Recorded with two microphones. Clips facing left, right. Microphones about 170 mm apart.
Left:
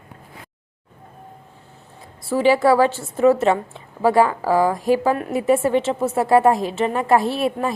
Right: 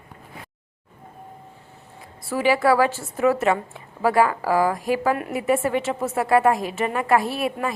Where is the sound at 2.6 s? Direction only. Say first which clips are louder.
Left 3 dB; 25° left (ahead or behind).